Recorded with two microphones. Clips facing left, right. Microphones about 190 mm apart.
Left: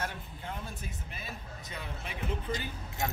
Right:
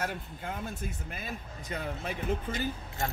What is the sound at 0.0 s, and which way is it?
Speech, 45° right (ahead or behind).